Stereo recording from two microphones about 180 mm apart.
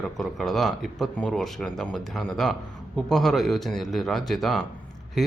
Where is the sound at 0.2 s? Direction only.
Centre (ahead or behind).